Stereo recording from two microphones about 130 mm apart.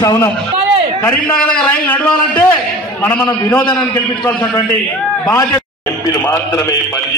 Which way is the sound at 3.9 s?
25° left (ahead or behind).